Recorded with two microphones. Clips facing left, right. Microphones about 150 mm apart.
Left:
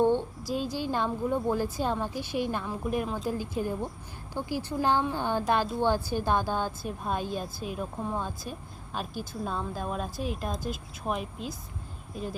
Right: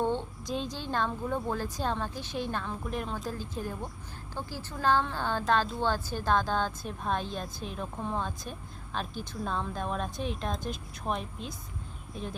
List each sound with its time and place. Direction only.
0.0 s a woman's voice: 15° left (ahead or behind)